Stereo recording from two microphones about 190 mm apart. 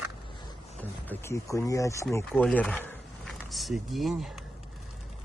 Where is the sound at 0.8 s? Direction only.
10° left (ahead or behind).